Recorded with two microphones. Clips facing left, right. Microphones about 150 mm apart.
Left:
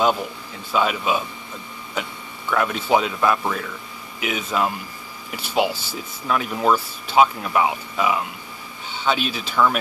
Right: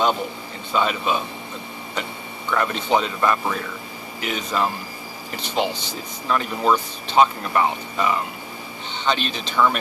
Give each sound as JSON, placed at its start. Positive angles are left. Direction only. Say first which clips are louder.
{"t": 0.7, "sound": "speech", "louder": "left 1 dB", "side_deg": 5}
{"t": 2.0, "sound": "a sound", "louder": "left 1 dB", "side_deg": 5}
{"t": 2.5, "sound": "speech", "louder": "left 1 dB", "side_deg": 5}